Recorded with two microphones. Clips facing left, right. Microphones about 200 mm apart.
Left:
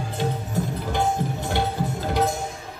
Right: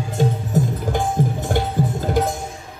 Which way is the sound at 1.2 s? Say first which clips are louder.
Right 6 dB; 45° right (ahead or behind).